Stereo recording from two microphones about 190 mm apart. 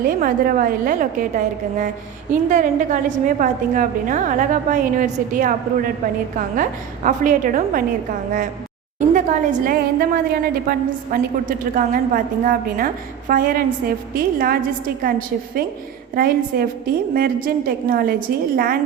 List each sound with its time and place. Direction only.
0.0 s a woman's voice: 50° right (ahead or behind)
2.5 s a woman's voice: 40° right (ahead or behind)
9.0 s a woman's voice: 45° right (ahead or behind)
16.1 s a woman's voice: 50° right (ahead or behind)